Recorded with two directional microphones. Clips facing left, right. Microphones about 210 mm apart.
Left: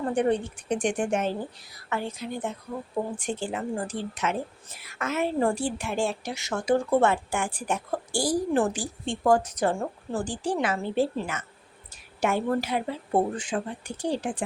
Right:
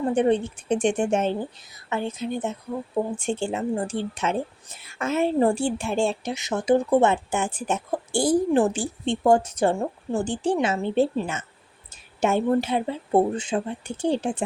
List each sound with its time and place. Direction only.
0.0 s a woman's voice: 25° right (ahead or behind)